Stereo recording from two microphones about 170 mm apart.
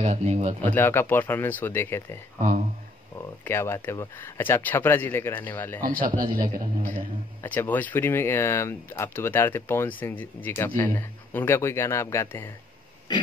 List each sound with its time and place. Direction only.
0.0 s speech: 40° right (ahead or behind)
0.7 s speech: 10° left (ahead or behind)
3.4 s speech: 15° left (ahead or behind)
5.8 s speech: 55° right (ahead or behind)
7.4 s speech: 10° left (ahead or behind)
13.1 s a sound: 25° left (ahead or behind)